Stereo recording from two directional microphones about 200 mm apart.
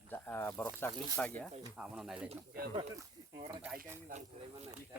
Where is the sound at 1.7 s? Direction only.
5° right (ahead or behind).